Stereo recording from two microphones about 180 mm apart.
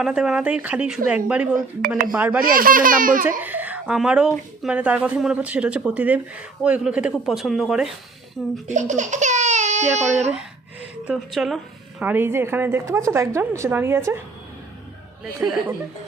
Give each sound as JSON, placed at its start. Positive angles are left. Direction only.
{"t": 0.0, "sound": "speech", "side_deg": -5}
{"t": 2.4, "sound": "speech", "side_deg": -50}
{"t": 3.2, "sound": "speech", "side_deg": -10}
{"t": 8.6, "sound": "speech", "side_deg": -40}
{"t": 11.0, "sound": "speech", "side_deg": -5}
{"t": 15.4, "sound": "speech", "side_deg": -10}